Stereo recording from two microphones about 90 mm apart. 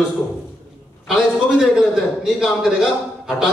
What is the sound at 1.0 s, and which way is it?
A man's voice, 5° right (ahead or behind).